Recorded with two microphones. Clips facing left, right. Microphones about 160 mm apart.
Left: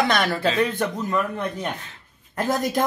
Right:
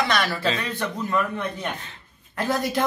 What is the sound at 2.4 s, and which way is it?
Speech, 45° left (ahead or behind).